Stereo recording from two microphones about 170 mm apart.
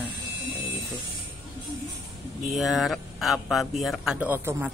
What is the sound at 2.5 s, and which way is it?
A man's voice, centre (ahead or behind).